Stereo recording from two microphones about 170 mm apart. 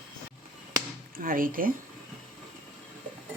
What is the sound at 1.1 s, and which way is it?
Speech, 55° right (ahead or behind).